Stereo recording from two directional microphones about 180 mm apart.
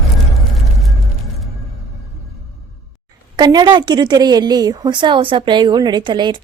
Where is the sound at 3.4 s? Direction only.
25° right (ahead or behind).